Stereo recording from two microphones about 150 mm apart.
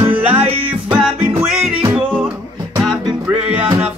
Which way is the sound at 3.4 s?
10° right (ahead or behind).